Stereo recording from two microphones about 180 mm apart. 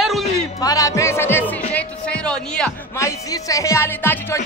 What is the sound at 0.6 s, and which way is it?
Speech, 20° left (ahead or behind).